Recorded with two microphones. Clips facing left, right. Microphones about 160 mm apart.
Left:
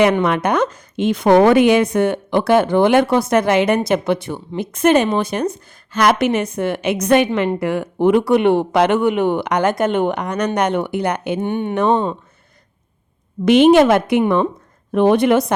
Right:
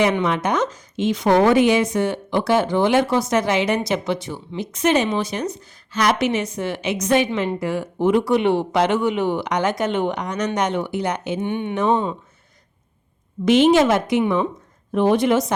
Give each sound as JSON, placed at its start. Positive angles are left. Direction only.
{"t": 0.0, "sound": "speech", "side_deg": 60}
{"t": 11.4, "sound": "speech", "side_deg": 40}
{"t": 11.7, "sound": "speech", "side_deg": 65}
{"t": 13.4, "sound": "speech", "side_deg": 60}